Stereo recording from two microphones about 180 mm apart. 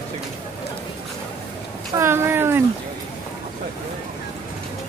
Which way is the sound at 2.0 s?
15° right (ahead or behind).